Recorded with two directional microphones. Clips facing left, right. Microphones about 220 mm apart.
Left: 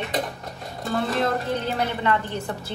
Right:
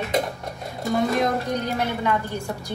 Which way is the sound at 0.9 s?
15° right (ahead or behind).